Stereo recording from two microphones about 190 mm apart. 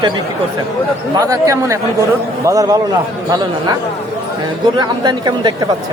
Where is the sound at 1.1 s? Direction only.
15° right (ahead or behind).